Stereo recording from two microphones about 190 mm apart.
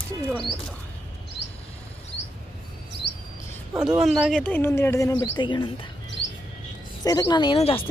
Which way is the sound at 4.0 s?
Centre (ahead or behind).